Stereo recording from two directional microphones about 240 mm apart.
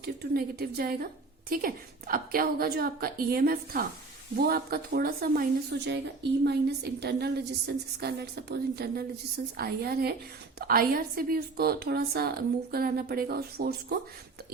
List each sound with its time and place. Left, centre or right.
0.0 s a woman's voice: right